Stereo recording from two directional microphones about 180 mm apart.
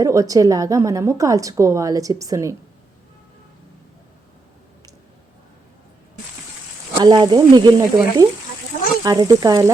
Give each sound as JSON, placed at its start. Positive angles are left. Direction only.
{"t": 0.0, "sound": "a woman's voice", "side_deg": -20}
{"t": 7.0, "sound": "a woman's voice", "side_deg": -25}